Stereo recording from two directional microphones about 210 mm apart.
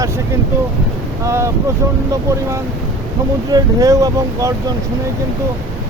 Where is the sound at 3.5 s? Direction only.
15° right (ahead or behind).